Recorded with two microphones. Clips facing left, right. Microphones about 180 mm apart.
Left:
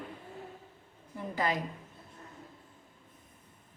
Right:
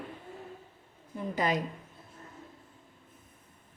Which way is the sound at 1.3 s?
20° right (ahead or behind).